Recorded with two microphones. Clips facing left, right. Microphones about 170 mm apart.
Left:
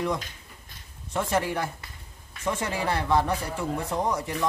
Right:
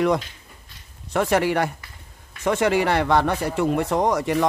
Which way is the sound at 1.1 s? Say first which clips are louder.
Right 6 dB; 75° right (ahead or behind).